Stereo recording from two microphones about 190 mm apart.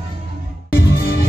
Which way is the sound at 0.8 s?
60° left (ahead or behind).